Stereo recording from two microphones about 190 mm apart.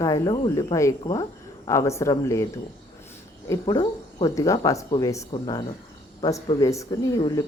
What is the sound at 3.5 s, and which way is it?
Speech, 20° left (ahead or behind).